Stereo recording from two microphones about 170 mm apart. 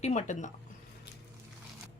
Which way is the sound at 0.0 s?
40° left (ahead or behind).